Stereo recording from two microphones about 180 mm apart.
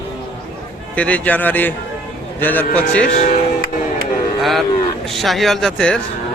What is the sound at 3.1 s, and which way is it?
Speech, 40° left (ahead or behind).